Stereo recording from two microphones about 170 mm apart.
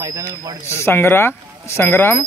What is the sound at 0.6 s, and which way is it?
Speech, 15° left (ahead or behind).